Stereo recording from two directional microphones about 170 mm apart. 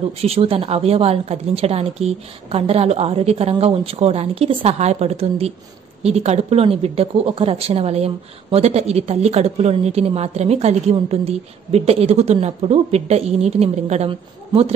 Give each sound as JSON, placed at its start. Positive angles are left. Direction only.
{"t": 0.2, "sound": "speech", "side_deg": -35}